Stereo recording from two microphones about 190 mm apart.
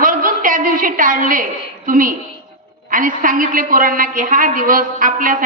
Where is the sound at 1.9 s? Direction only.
45° right (ahead or behind).